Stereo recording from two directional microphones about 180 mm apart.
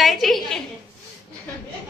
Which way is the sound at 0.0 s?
Centre (ahead or behind).